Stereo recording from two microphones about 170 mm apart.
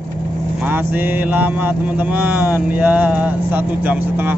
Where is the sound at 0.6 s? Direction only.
10° right (ahead or behind).